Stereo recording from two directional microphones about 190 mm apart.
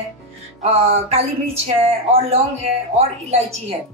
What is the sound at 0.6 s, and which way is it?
Speech, 35° right (ahead or behind).